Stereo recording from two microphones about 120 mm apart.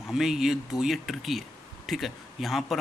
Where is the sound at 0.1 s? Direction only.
5° right (ahead or behind).